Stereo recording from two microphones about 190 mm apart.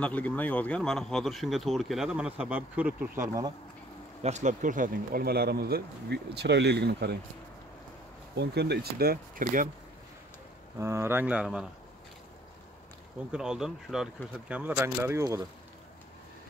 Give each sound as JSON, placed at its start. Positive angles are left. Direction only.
{"t": 0.0, "sound": "speech", "side_deg": 10}
{"t": 4.2, "sound": "speech", "side_deg": -40}
{"t": 8.4, "sound": "speech", "side_deg": -60}
{"t": 10.8, "sound": "speech", "side_deg": -15}
{"t": 13.3, "sound": "speech", "side_deg": -5}